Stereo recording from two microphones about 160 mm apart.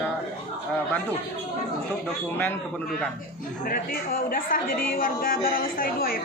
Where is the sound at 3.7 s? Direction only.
65° left (ahead or behind).